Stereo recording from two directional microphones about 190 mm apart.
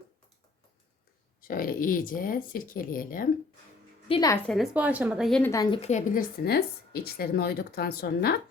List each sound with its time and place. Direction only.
1.4 s speech: 50° left (ahead or behind)
4.1 s a woman's voice: 20° left (ahead or behind)
4.4 s speech: centre (ahead or behind)
5.4 s a woman's voice: 15° left (ahead or behind)
5.7 s a woman's voice: 35° left (ahead or behind)
6.1 s a woman's voice: 55° left (ahead or behind)